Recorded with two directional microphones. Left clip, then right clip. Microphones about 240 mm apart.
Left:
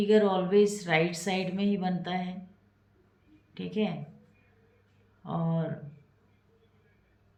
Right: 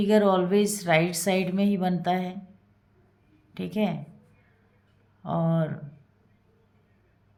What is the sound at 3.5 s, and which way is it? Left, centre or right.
Speech, right.